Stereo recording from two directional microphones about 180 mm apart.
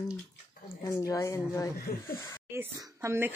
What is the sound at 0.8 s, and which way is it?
Speech, 15° left (ahead or behind).